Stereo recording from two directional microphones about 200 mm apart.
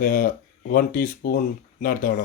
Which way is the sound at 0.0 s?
45° left (ahead or behind).